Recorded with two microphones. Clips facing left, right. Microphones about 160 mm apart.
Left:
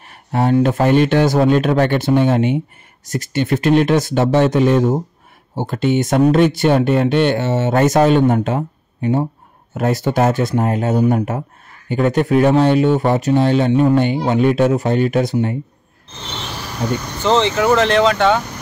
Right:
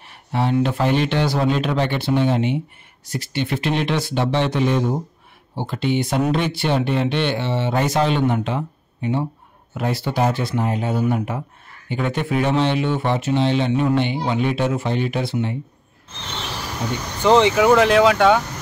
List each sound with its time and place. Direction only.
0.0 s speech: 50° left (ahead or behind)
17.2 s speech: 10° right (ahead or behind)